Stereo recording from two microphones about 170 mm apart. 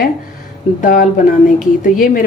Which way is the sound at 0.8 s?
55° left (ahead or behind).